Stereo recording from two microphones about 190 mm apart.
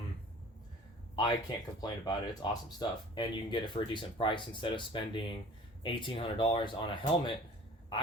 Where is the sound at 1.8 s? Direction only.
20° left (ahead or behind).